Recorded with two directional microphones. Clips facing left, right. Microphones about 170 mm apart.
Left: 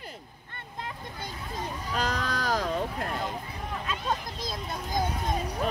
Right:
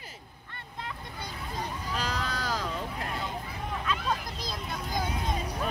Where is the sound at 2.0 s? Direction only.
55° left (ahead or behind).